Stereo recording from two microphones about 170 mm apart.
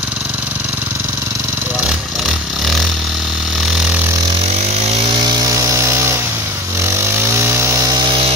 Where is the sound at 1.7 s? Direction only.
Centre (ahead or behind).